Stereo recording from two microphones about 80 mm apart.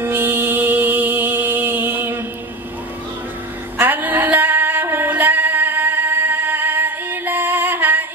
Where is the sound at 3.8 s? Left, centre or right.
Right.